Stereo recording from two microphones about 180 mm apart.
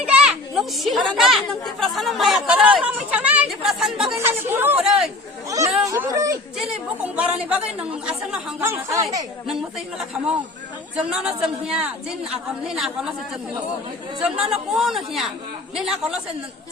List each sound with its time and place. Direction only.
0.0 s a woman's voice: 5° right (ahead or behind)
5.8 s a sound: 15° right (ahead or behind)
6.6 s a woman's voice: 5° right (ahead or behind)
8.6 s a woman's voice: 15° right (ahead or behind)
9.5 s speech: centre (ahead or behind)
14.2 s speech: 5° right (ahead or behind)